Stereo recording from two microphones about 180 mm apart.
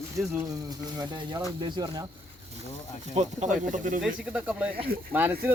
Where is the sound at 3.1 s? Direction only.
40° right (ahead or behind).